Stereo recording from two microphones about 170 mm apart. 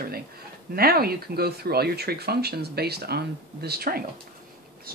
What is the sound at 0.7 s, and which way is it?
Speech, 65° right (ahead or behind).